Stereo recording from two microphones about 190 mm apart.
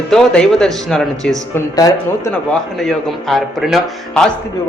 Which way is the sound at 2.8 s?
Centre (ahead or behind).